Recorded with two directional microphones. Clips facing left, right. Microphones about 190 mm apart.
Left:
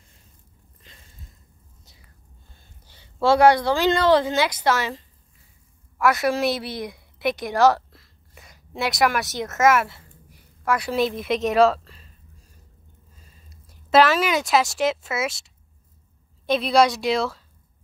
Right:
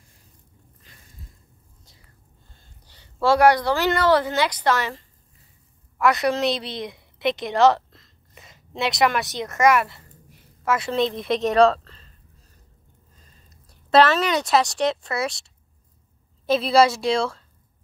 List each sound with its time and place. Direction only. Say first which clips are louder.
0.9 s a sound: left 3 dB; 20° left (ahead or behind)
2.6 s a woman's voice: even; 15° left (ahead or behind)
6.6 s a woman's voice: left 1 dB; 20° right (ahead or behind)
6.9 s a sound: right 3 dB; centre (ahead or behind)
9.5 s a woman's voice: even; centre (ahead or behind)
13.1 s a woman's voice: left 2 dB; 10° left (ahead or behind)